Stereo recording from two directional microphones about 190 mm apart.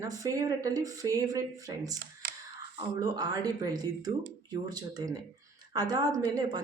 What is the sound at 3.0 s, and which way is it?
A woman's voice, 20° right (ahead or behind).